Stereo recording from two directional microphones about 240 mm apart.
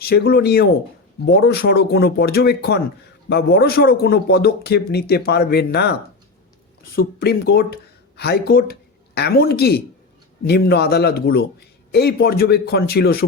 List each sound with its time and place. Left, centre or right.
0.0 s a man's voice: left
6.9 s a man's voice: left